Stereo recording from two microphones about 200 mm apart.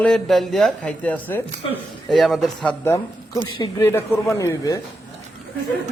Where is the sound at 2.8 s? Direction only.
15° left (ahead or behind).